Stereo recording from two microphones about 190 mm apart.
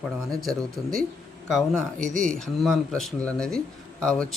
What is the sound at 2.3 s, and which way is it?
Speech, 5° left (ahead or behind).